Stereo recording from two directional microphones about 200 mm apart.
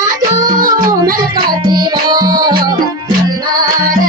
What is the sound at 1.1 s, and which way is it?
Music, 45° right (ahead or behind).